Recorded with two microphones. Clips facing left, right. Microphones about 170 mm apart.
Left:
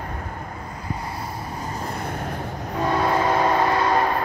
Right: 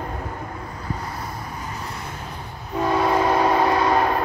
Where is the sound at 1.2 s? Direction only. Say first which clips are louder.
Left 1 dB; 35° left (ahead or behind).